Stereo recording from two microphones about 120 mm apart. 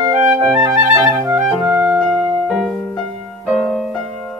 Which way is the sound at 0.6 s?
25° right (ahead or behind).